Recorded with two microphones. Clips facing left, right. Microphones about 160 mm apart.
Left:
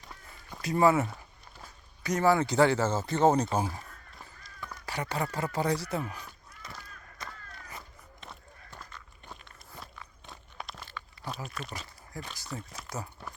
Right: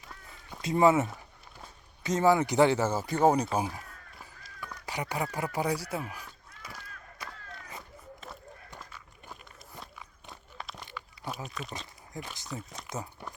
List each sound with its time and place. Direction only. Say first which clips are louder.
0.6 s speech: right 1 dB; 20° right (ahead or behind)
3.6 s crow: even; 10° right (ahead or behind)
4.9 s speech: even; 15° right (ahead or behind)
7.2 s battle cry: even; 10° right (ahead or behind)
7.8 s a sound: right 3 dB; 5° right (ahead or behind)
8.8 s walk: even; 10° right (ahead or behind)
10.8 s a sound: right 1 dB; 15° right (ahead or behind)
11.4 s speech: even; centre (ahead or behind)
12.1 s speech: right 1 dB; 20° right (ahead or behind)
12.5 s speech: even; centre (ahead or behind)
12.9 s a sound: right 1 dB; 15° right (ahead or behind)